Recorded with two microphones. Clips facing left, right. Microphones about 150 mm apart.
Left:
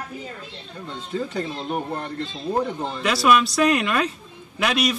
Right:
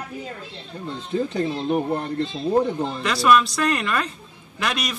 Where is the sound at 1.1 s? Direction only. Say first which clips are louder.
Right 3 dB; 25° right (ahead or behind).